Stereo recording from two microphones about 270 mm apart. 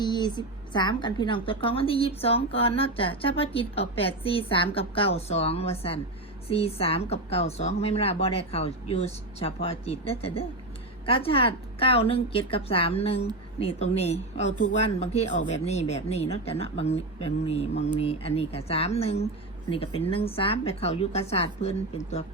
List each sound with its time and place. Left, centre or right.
0.0 s a woman's voice: centre